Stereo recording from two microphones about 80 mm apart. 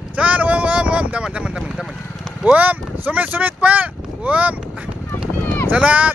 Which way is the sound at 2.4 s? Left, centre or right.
Centre.